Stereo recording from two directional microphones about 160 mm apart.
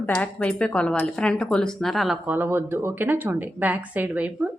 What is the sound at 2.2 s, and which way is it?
A woman's voice, 10° right (ahead or behind).